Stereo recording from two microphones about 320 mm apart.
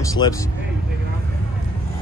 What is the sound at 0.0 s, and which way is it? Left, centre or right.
Speech, centre.